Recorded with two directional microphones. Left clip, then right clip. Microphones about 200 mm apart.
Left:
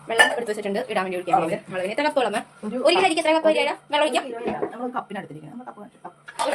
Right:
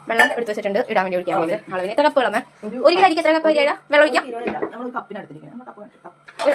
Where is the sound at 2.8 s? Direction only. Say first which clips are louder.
Right 4 dB; 15° right (ahead or behind).